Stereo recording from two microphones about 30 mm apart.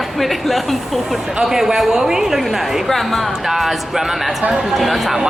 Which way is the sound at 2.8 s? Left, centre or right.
Centre.